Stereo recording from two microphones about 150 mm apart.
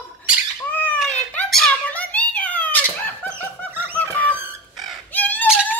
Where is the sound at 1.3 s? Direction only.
5° left (ahead or behind).